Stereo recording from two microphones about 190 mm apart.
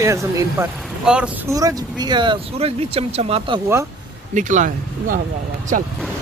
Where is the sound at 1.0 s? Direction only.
5° right (ahead or behind).